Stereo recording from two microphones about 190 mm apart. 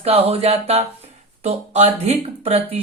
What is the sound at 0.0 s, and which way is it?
Speech, 30° right (ahead or behind).